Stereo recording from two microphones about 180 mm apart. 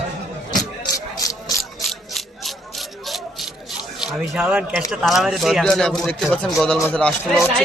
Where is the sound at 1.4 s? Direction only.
Centre (ahead or behind).